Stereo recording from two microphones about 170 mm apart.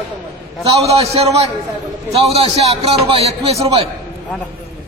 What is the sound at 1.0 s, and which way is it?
A man's voice, 35° right (ahead or behind).